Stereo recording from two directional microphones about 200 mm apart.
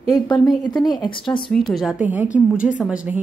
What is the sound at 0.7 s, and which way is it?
Speech, 20° left (ahead or behind).